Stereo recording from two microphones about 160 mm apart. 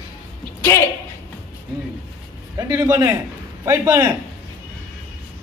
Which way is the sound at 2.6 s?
20° right (ahead or behind).